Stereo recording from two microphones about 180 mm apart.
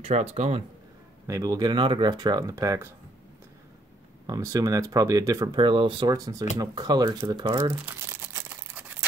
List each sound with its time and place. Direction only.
0.0 s speech: 35° right (ahead or behind)
1.2 s speech: 20° right (ahead or behind)
4.3 s speech: 20° right (ahead or behind)
6.5 s crumpling: 20° right (ahead or behind)